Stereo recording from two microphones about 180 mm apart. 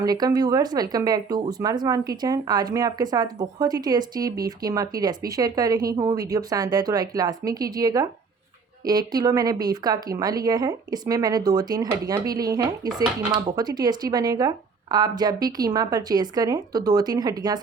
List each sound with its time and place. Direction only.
0.0 s speech: 20° right (ahead or behind)